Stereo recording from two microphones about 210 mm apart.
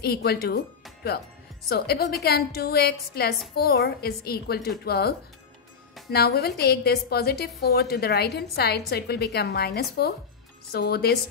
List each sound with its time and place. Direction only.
0.0 s a woman's voice: 50° left (ahead or behind)
1.7 s a woman's voice: 45° left (ahead or behind)